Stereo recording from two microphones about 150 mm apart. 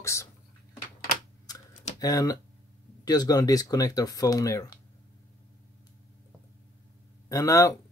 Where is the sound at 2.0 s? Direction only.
25° left (ahead or behind).